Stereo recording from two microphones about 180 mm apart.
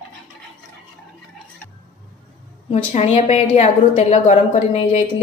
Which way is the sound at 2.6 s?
35° left (ahead or behind).